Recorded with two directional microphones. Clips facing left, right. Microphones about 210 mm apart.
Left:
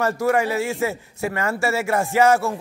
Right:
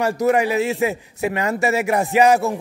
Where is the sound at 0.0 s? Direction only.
20° right (ahead or behind).